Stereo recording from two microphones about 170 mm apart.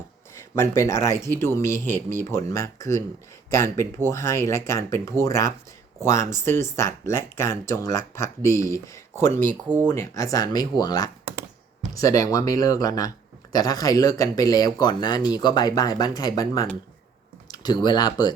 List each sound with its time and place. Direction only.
0.5 s speech: 15° left (ahead or behind)